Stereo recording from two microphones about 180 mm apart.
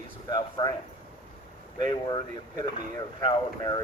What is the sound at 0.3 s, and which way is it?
Speech, 20° left (ahead or behind).